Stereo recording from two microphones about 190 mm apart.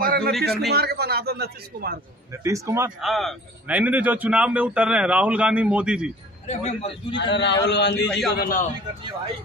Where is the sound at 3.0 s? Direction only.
Centre (ahead or behind).